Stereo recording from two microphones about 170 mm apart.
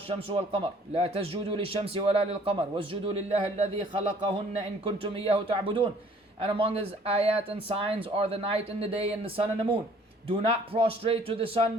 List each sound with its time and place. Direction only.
0.1 s a man's voice: 35° right (ahead or behind)
4.9 s a man's voice: 35° right (ahead or behind)